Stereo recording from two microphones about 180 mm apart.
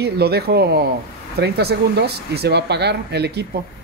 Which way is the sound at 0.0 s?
60° right (ahead or behind).